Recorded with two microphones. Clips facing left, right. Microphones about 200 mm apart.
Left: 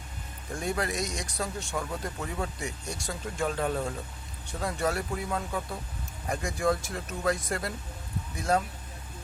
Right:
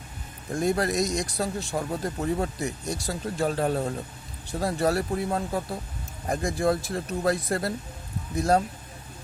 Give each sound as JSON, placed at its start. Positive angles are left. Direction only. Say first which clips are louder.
{"t": 0.5, "sound": "speech", "louder": "right 6 dB", "side_deg": -40}